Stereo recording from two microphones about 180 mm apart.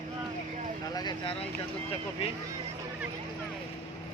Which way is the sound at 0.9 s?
25° left (ahead or behind).